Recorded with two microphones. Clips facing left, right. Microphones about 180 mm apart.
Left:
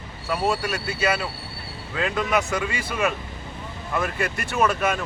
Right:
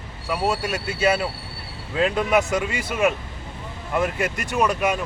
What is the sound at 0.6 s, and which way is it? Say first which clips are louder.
Speech: right 3 dB; 25° right (ahead or behind).